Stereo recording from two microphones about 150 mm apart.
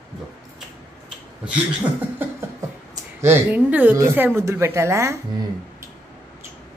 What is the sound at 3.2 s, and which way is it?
A woman's voice, 15° right (ahead or behind).